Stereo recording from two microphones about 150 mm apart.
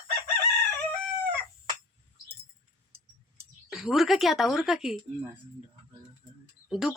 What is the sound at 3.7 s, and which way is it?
Speech, centre (ahead or behind).